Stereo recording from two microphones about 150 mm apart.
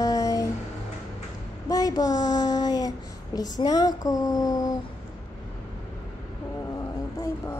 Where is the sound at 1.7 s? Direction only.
25° left (ahead or behind).